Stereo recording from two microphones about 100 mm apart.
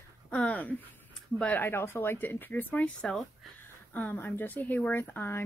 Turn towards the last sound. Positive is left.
turn(degrees=20)  # may be behind; listen again after turning